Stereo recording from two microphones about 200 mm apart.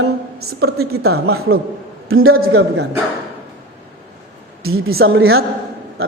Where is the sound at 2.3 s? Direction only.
55° right (ahead or behind).